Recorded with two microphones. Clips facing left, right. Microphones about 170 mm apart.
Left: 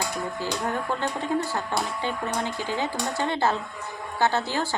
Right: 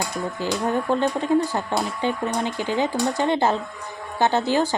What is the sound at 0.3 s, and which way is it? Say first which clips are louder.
Speech: right 7 dB; 20° right (ahead or behind).